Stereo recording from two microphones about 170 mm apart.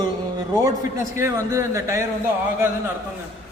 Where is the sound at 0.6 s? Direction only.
15° right (ahead or behind).